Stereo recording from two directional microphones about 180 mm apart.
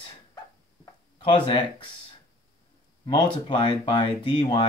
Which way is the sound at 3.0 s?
25° left (ahead or behind).